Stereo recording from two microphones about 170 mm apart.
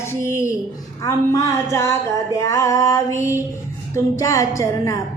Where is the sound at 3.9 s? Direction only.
20° left (ahead or behind).